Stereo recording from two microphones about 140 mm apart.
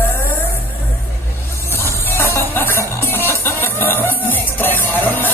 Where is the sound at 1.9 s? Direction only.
15° left (ahead or behind).